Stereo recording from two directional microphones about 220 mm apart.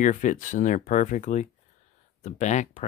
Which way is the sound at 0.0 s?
35° left (ahead or behind).